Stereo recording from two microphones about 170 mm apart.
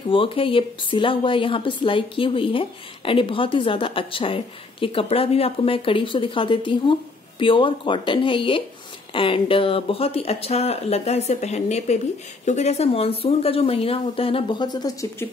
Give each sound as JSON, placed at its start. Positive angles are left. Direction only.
{"t": 0.1, "sound": "a woman's voice", "side_deg": 30}